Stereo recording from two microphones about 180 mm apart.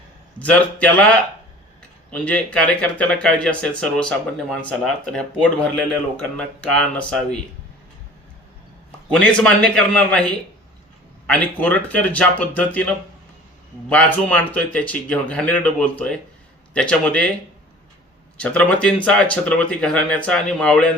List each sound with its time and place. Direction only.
0.3 s speech: 5° left (ahead or behind)
9.0 s speech: 5° left (ahead or behind)
13.9 s speech: 10° left (ahead or behind)
18.3 s speech: 5° left (ahead or behind)